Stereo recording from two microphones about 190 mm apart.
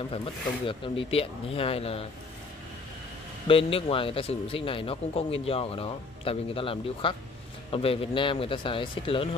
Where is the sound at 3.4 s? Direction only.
30° left (ahead or behind).